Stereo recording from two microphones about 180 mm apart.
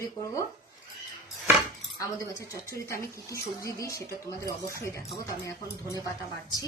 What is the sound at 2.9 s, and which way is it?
Speech, 15° left (ahead or behind).